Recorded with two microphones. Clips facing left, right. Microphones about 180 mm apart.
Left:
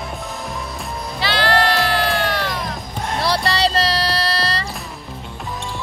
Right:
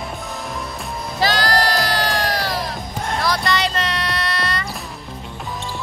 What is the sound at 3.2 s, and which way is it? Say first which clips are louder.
Music: left 2 dB; 30° left (ahead or behind).